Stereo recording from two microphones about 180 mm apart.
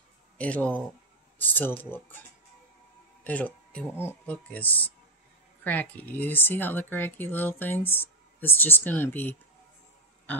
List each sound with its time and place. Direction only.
0.4 s speech: 10° left (ahead or behind)
3.3 s speech: 10° left (ahead or behind)